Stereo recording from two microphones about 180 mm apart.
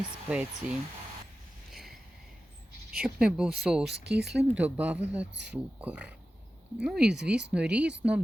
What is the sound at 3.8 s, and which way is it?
Speech, 65° right (ahead or behind).